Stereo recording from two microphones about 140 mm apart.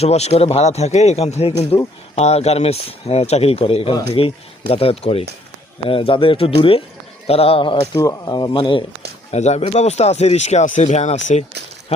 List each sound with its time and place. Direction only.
0.0 s speech: 50° left (ahead or behind)
7.9 s speech: 25° left (ahead or behind)
9.3 s speech: 50° left (ahead or behind)